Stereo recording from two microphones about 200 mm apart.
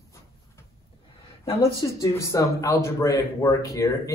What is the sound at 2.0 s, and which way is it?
A man's voice, 15° left (ahead or behind).